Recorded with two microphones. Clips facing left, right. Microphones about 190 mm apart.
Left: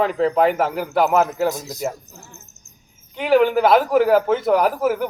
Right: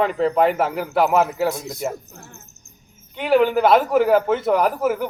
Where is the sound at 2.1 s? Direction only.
55° right (ahead or behind).